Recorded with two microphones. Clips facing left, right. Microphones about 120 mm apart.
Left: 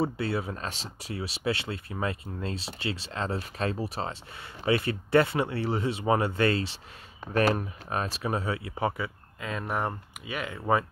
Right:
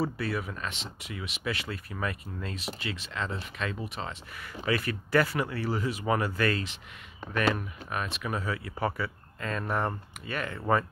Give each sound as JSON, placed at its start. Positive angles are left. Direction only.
{"t": 0.0, "sound": "speech", "side_deg": 25}